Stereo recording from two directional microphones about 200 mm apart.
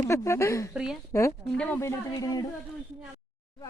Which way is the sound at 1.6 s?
5° left (ahead or behind).